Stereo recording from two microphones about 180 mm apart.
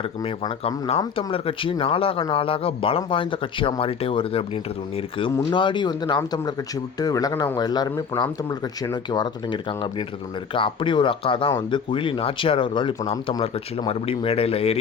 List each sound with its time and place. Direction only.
1.1 s speech: 30° left (ahead or behind)